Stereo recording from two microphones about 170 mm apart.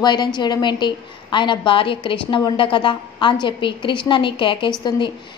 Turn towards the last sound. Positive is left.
turn(degrees=25)  # may be behind; listen again after turning